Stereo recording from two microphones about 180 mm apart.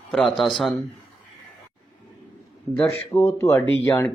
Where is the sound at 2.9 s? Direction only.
15° left (ahead or behind).